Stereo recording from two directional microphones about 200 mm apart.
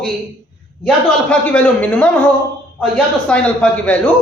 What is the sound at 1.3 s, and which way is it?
A man's voice, 5° left (ahead or behind).